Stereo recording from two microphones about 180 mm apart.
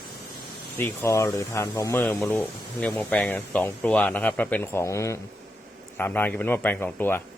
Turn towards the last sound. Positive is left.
turn(degrees=10)  # may be behind; listen again after turning